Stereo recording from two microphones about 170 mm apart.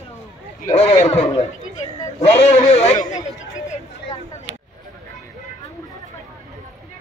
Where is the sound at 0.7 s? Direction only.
40° left (ahead or behind).